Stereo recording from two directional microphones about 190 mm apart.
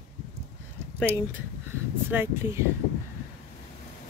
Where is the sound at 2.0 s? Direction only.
10° right (ahead or behind).